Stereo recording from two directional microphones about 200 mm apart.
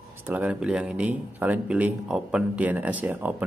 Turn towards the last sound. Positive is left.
turn(degrees=-10)  # may be behind; listen again after turning